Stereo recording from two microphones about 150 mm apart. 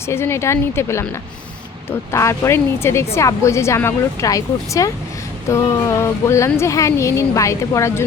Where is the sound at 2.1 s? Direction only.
20° left (ahead or behind).